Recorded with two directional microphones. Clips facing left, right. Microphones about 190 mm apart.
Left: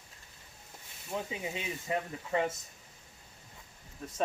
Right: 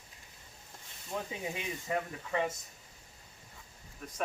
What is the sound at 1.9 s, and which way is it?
Speech, 20° left (ahead or behind).